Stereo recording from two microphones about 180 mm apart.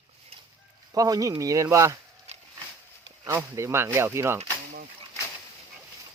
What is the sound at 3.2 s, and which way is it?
A man's voice, 15° right (ahead or behind).